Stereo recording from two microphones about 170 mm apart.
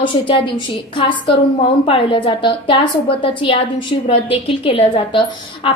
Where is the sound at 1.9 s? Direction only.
30° left (ahead or behind).